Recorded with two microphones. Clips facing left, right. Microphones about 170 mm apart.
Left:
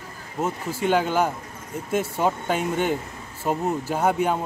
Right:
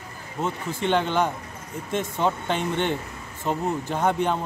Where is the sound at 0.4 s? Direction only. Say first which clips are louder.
Left 2 dB; 5° left (ahead or behind).